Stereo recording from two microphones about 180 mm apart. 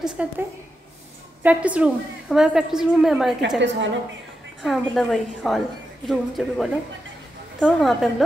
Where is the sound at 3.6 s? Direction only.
90° right.